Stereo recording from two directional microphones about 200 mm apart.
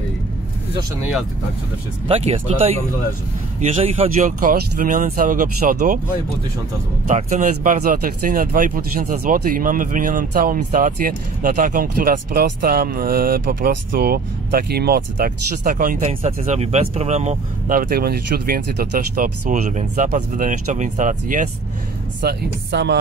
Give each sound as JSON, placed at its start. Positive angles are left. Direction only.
{"t": 2.0, "sound": "speech", "side_deg": -30}
{"t": 3.6, "sound": "speech", "side_deg": -35}
{"t": 7.1, "sound": "speech", "side_deg": -35}
{"t": 16.1, "sound": "speech", "side_deg": -30}
{"t": 22.2, "sound": "speech", "side_deg": -60}